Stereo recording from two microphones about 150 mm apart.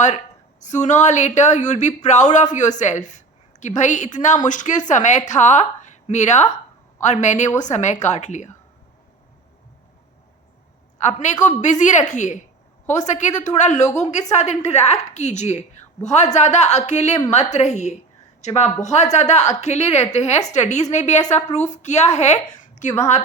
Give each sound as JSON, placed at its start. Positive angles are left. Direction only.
{"t": 0.6, "sound": "speech", "side_deg": 50}
{"t": 11.0, "sound": "speech", "side_deg": 50}